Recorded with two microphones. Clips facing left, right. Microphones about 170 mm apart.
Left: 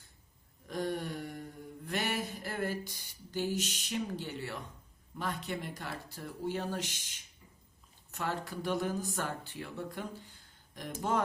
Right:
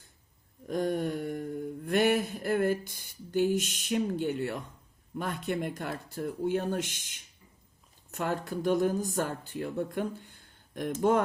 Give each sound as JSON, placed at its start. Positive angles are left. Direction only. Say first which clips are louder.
{"t": 0.7, "sound": "mantra", "louder": "right 6 dB", "side_deg": -45}
{"t": 5.1, "sound": "speech", "louder": "right 5 dB", "side_deg": -55}
{"t": 8.1, "sound": "speech", "louder": "right 5 dB", "side_deg": -50}